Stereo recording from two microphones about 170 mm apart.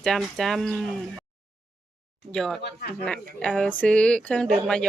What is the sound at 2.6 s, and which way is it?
Speech, 65° left (ahead or behind).